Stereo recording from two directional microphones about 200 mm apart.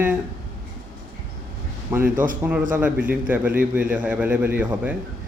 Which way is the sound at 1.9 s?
10° right (ahead or behind).